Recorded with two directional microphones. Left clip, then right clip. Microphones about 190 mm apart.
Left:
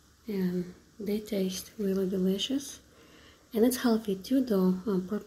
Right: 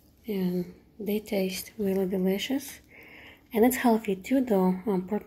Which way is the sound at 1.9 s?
25° right (ahead or behind).